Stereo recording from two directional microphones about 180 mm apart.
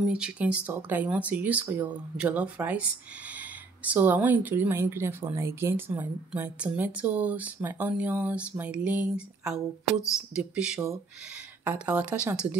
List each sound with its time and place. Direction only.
0.0 s speech: 5° right (ahead or behind)